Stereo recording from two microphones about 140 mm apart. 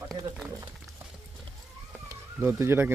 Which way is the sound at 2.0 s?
15° right (ahead or behind).